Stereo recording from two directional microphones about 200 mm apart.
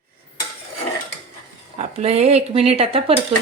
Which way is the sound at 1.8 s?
30° right (ahead or behind).